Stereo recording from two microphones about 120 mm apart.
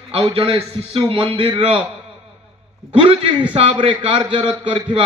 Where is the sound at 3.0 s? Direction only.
45° right (ahead or behind).